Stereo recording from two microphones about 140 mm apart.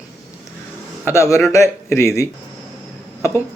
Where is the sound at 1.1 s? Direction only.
20° left (ahead or behind).